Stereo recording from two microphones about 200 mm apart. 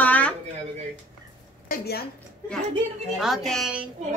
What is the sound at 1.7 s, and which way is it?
Speech, 50° left (ahead or behind).